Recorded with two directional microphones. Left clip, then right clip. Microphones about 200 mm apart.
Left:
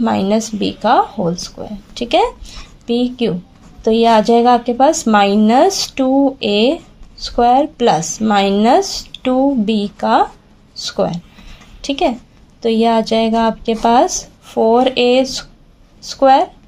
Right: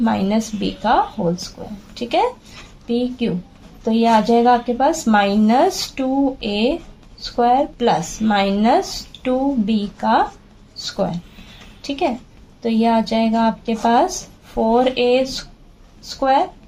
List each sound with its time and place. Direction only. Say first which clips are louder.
0.0 s a woman's voice: left 4 dB; 40° left (ahead or behind)